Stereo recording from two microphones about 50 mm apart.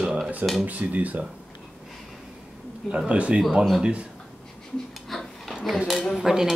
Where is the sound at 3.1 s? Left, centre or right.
Right.